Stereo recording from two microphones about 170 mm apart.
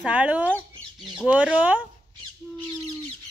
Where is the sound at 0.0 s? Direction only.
10° right (ahead or behind).